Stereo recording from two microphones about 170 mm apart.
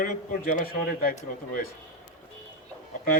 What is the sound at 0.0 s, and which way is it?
A man's voice, 50° left (ahead or behind).